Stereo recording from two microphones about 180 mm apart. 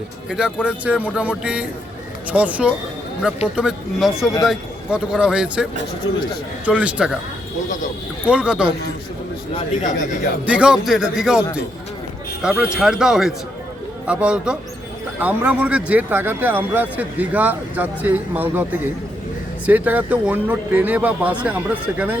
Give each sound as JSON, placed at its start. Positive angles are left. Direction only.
{"t": 0.3, "sound": "a man's voice", "side_deg": -5}
{"t": 6.0, "sound": "a man's voice", "side_deg": 90}
{"t": 6.7, "sound": "speech", "side_deg": -5}
{"t": 8.3, "sound": "a man's voice", "side_deg": -5}
{"t": 9.7, "sound": "speech", "side_deg": 45}
{"t": 10.4, "sound": "a man's voice", "side_deg": -5}
{"t": 12.4, "sound": "a man's voice", "side_deg": -5}
{"t": 19.6, "sound": "speech", "side_deg": -10}